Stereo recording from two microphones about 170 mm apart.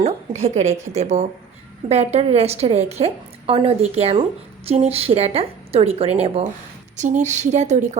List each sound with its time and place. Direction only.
0.0 s a woman's voice: 40° right (ahead or behind)